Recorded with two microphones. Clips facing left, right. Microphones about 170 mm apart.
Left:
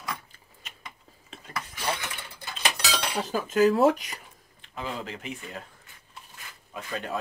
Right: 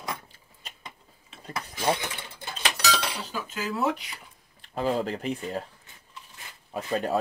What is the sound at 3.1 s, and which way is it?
Speech, 50° left (ahead or behind).